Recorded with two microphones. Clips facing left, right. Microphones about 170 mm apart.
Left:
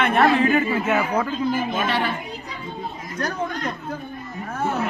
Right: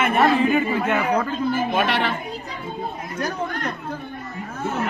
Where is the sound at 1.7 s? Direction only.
75° right (ahead or behind).